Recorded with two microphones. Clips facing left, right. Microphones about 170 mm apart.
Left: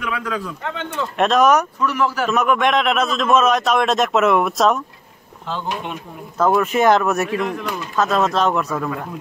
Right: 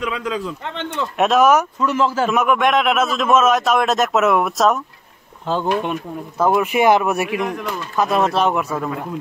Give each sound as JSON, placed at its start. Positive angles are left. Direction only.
{"t": 0.0, "sound": "a man's voice", "side_deg": -20}
{"t": 1.1, "sound": "speech", "side_deg": -5}
{"t": 1.8, "sound": "a man's voice", "side_deg": -25}
{"t": 2.3, "sound": "a man's voice", "side_deg": -5}
{"t": 5.5, "sound": "speech", "side_deg": -50}
{"t": 6.4, "sound": "speech", "side_deg": -10}